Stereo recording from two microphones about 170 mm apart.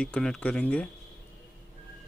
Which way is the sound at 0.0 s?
5° left (ahead or behind).